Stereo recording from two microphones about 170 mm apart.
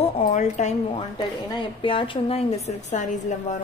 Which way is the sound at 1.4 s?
25° left (ahead or behind).